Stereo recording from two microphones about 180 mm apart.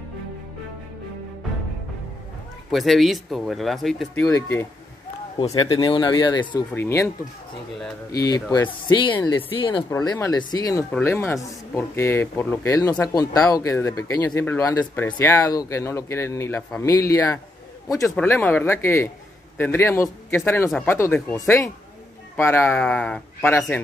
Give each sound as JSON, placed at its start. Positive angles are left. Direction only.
{"t": 2.7, "sound": "speech", "side_deg": 0}
{"t": 5.5, "sound": "speech", "side_deg": 25}
{"t": 6.7, "sound": "speech", "side_deg": 15}
{"t": 8.1, "sound": "a man's voice", "side_deg": 20}
{"t": 18.1, "sound": "speech", "side_deg": 10}